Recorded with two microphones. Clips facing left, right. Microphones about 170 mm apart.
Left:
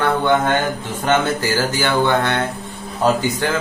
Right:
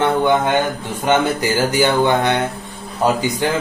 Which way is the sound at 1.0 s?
15° right (ahead or behind).